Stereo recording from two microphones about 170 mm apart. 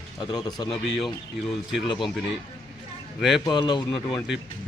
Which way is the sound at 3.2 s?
Centre (ahead or behind).